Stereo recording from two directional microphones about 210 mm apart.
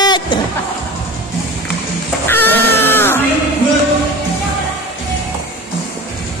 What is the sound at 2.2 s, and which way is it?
Music, 10° left (ahead or behind).